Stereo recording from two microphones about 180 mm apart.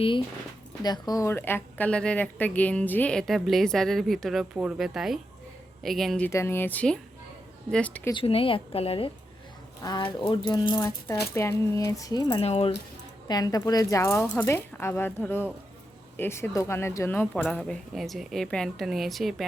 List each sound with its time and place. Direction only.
0.8 s speech: 20° left (ahead or behind)
8.1 s a woman's voice: 30° left (ahead or behind)
12.4 s a woman's voice: 35° left (ahead or behind)
13.2 s speech: 20° left (ahead or behind); by 19.5 s centre (ahead or behind)